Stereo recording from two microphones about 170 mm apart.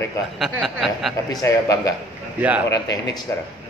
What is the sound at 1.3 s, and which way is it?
A man's voice, 20° left (ahead or behind).